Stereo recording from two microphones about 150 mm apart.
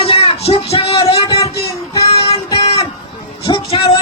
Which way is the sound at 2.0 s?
40° left (ahead or behind).